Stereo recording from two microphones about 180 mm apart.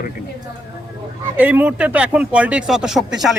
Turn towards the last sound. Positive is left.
turn(degrees=0)  # may be behind; listen again after turning